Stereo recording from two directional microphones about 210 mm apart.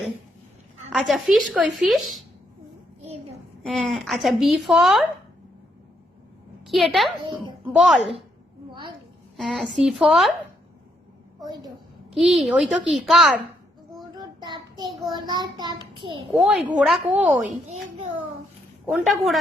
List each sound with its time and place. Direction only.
0.9 s a woman's voice: centre (ahead or behind)
3.6 s a woman's voice: 5° left (ahead or behind)
6.7 s a woman's voice: centre (ahead or behind)
9.4 s a woman's voice: centre (ahead or behind)
11.4 s child singing: 20° right (ahead or behind)
12.1 s a woman's voice: centre (ahead or behind)
14.2 s child singing: 20° right (ahead or behind)
16.3 s a woman's voice: 5° right (ahead or behind)
18.9 s a woman's voice: centre (ahead or behind)